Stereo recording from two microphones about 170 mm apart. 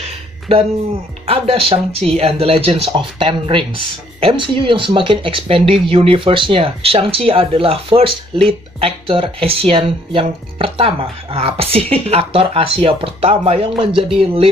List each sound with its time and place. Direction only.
1.2 s speech: 30° right (ahead or behind)